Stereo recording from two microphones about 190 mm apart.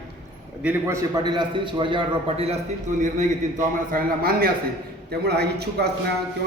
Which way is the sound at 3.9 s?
50° right (ahead or behind).